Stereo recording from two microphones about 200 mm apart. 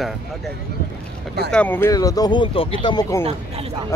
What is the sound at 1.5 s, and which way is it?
Speech, 10° left (ahead or behind).